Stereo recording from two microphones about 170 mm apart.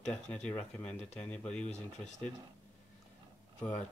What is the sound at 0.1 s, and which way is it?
A man's voice, 5° left (ahead or behind).